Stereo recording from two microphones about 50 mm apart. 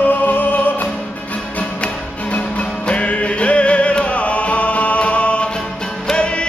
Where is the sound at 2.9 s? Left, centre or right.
Left.